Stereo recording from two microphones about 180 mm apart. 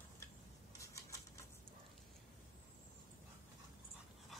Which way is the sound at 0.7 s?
15° left (ahead or behind).